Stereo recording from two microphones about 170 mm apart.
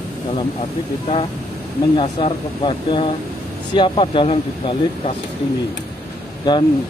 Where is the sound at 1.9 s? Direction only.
30° left (ahead or behind).